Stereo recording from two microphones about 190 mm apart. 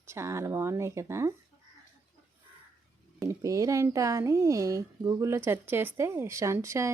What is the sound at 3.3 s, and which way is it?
A woman's voice, 15° right (ahead or behind).